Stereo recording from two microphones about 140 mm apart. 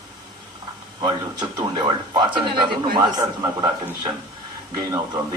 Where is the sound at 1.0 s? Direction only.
30° right (ahead or behind).